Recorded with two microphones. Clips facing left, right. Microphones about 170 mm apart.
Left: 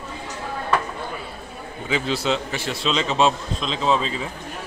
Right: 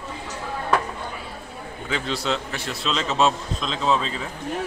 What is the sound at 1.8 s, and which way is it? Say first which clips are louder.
A man's voice: left 3 dB; 5° left (ahead or behind).